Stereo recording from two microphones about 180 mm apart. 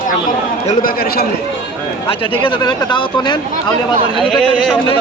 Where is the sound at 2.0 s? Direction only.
30° left (ahead or behind).